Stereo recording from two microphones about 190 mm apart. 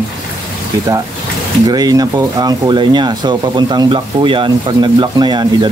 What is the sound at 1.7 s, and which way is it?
Speech, 20° right (ahead or behind).